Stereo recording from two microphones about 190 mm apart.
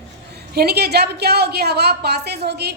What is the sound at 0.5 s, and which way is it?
A woman's voice, 55° right (ahead or behind).